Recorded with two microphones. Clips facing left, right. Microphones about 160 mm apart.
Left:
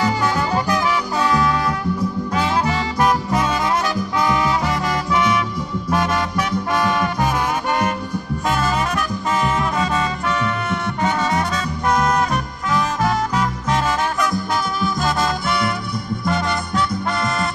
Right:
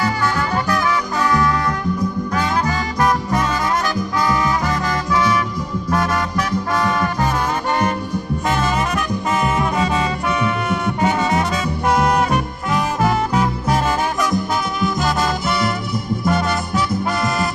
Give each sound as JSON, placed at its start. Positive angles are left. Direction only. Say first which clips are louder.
{"t": 0.7, "sound": "music", "louder": "even", "side_deg": 20}
{"t": 8.5, "sound": "brass instrument", "louder": "even", "side_deg": -5}
{"t": 14.8, "sound": "music", "louder": "right 1 dB", "side_deg": 0}
{"t": 16.3, "sound": "music", "louder": "right 2 dB", "side_deg": -5}